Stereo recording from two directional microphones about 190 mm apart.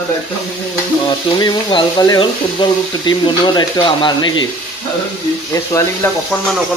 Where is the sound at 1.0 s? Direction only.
25° left (ahead or behind).